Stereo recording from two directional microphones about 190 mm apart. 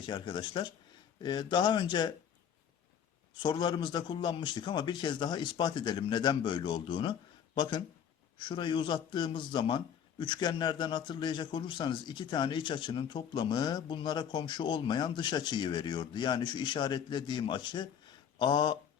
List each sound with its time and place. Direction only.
0.0 s speech: 25° left (ahead or behind)
3.4 s speech: 20° left (ahead or behind)